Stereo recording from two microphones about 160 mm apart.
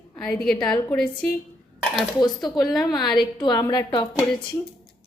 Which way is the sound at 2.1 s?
25° left (ahead or behind).